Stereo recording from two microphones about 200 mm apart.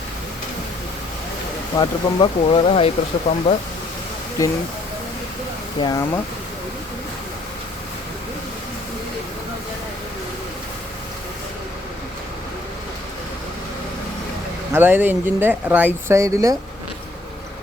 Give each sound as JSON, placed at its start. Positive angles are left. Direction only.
{"t": 1.8, "sound": "speech", "side_deg": 25}
{"t": 5.8, "sound": "speech", "side_deg": 15}
{"t": 14.7, "sound": "speech", "side_deg": -10}